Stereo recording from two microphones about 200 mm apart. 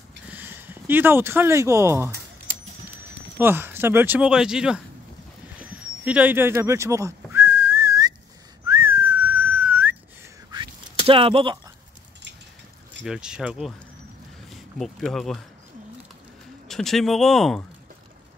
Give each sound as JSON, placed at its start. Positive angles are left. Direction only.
{"t": 0.3, "sound": "speech", "side_deg": -10}
{"t": 3.3, "sound": "speech", "side_deg": -10}
{"t": 5.6, "sound": "a sound", "side_deg": -5}
{"t": 8.6, "sound": "whistling", "side_deg": -15}
{"t": 11.1, "sound": "speech", "side_deg": -25}
{"t": 13.0, "sound": "speech", "side_deg": -5}
{"t": 16.6, "sound": "speech", "side_deg": 0}